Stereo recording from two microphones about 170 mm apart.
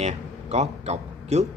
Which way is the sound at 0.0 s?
40° right (ahead or behind).